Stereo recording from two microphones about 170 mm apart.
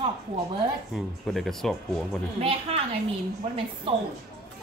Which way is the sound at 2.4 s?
35° right (ahead or behind).